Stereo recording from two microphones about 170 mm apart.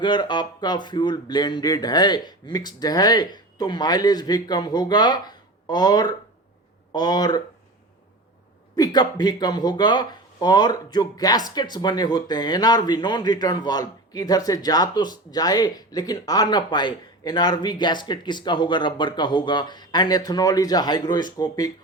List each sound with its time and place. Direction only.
0.0 s speech: 25° left (ahead or behind)
8.7 s speech: 25° left (ahead or behind)